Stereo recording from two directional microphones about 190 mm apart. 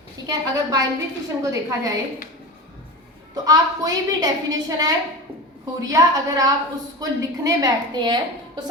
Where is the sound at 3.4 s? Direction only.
20° right (ahead or behind).